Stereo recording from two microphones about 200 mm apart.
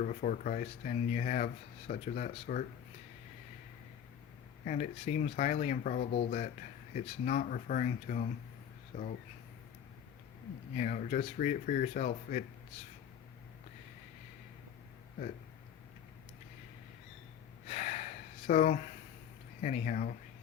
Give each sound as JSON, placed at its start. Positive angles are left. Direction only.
{"t": 0.0, "sound": "speech", "side_deg": 40}
{"t": 4.6, "sound": "speech", "side_deg": 35}
{"t": 10.8, "sound": "speech", "side_deg": 40}
{"t": 17.7, "sound": "gasp", "side_deg": 35}
{"t": 19.6, "sound": "speech", "side_deg": 40}